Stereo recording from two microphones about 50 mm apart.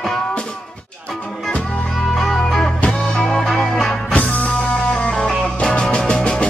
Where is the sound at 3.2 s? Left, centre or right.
Centre.